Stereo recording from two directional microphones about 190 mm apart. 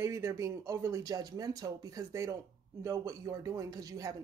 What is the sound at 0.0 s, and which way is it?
Speech, 15° right (ahead or behind).